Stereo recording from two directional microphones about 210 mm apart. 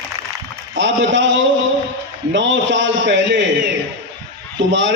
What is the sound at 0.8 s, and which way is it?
A man's voice, 60° right (ahead or behind).